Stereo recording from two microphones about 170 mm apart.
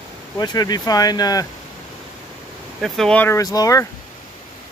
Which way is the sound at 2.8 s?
Centre (ahead or behind).